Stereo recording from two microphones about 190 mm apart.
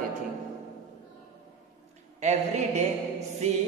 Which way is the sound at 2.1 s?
40° right (ahead or behind).